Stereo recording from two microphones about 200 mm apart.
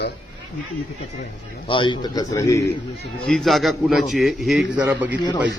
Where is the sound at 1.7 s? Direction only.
25° left (ahead or behind).